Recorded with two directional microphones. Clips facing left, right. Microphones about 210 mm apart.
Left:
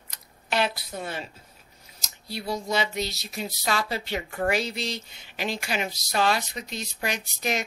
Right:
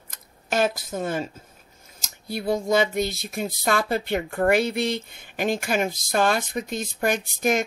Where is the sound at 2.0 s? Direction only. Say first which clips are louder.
Right 5 dB; 50° right (ahead or behind).